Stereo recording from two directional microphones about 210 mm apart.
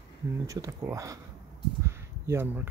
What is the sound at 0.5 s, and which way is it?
Speech, 15° right (ahead or behind).